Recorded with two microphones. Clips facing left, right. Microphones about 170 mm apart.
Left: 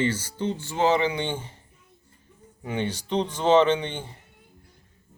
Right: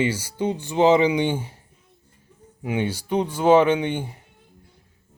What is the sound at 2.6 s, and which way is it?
Speech, 10° right (ahead or behind).